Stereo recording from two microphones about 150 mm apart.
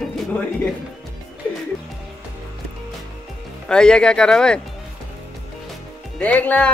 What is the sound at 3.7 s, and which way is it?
Speech, 5° left (ahead or behind).